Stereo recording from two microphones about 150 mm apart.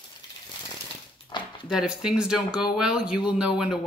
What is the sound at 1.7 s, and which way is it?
Speech, 5° right (ahead or behind).